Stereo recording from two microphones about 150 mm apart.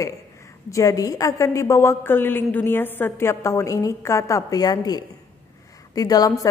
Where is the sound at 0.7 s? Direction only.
20° left (ahead or behind).